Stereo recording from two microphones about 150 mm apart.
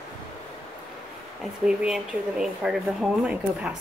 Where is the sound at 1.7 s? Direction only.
5° right (ahead or behind).